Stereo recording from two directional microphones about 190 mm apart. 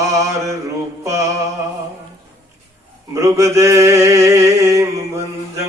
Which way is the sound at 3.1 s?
15° right (ahead or behind).